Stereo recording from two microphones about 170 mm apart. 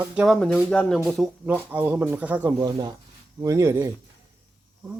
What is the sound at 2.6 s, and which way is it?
Speech, 25° right (ahead or behind).